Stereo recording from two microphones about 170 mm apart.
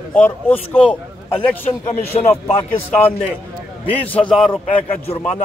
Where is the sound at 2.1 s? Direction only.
35° left (ahead or behind).